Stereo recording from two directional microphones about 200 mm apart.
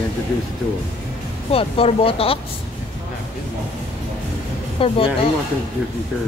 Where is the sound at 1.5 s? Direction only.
30° left (ahead or behind).